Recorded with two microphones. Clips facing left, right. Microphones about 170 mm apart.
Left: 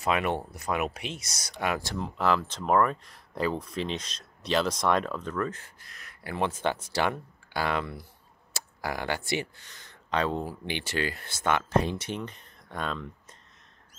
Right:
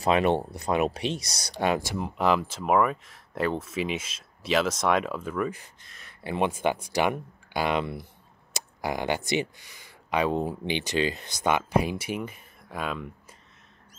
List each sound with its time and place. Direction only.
0.0 s speech: 30° right (ahead or behind)
2.0 s speech: 15° right (ahead or behind)
5.8 s speech: 30° right (ahead or behind); by 13.4 s 10° right (ahead or behind)